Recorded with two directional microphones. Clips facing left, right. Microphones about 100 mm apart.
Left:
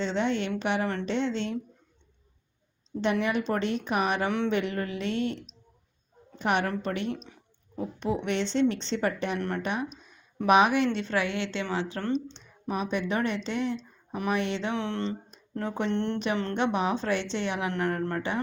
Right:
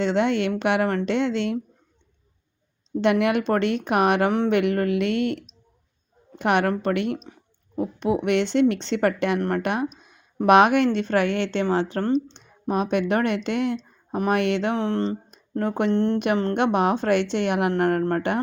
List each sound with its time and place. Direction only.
0.0 s speech: 60° right (ahead or behind)
3.0 s speech: 70° right (ahead or behind)
7.8 s speech: 70° right (ahead or behind); by 11.6 s 55° right (ahead or behind)
11.6 s speech: 40° right (ahead or behind); by 14.8 s 60° right (ahead or behind)
14.8 s speech: 40° right (ahead or behind)
15.5 s speech: 50° right (ahead or behind)
15.9 s speech: 35° right (ahead or behind)
16.1 s speech: 55° right (ahead or behind)